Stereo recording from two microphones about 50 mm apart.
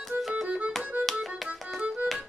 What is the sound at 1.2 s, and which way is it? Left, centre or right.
Music, centre.